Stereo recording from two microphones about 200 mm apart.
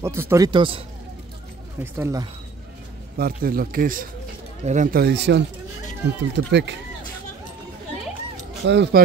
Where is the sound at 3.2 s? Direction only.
45° right (ahead or behind).